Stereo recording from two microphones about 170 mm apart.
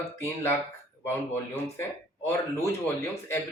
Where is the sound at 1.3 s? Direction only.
15° left (ahead or behind).